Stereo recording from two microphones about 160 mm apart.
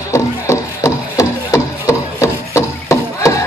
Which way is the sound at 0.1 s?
20° left (ahead or behind).